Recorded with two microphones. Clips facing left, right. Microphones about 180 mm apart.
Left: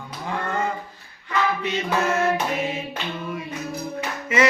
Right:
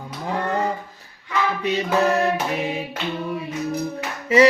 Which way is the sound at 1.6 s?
35° right (ahead or behind).